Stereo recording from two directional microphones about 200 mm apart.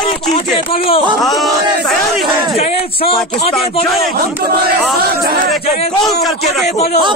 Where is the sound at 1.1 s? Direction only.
Centre (ahead or behind).